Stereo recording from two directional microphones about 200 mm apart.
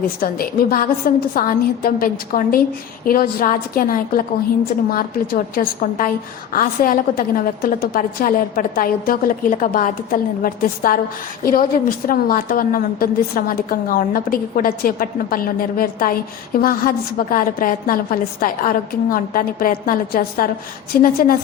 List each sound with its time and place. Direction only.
0.2 s a woman's voice: 45° left (ahead or behind)